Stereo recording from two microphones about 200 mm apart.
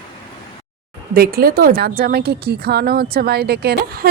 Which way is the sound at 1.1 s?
50° right (ahead or behind).